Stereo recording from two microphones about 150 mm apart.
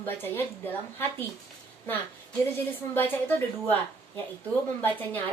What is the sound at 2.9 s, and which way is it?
A woman's voice, 10° left (ahead or behind).